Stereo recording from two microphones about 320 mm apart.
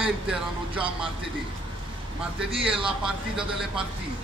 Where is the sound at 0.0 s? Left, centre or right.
Centre.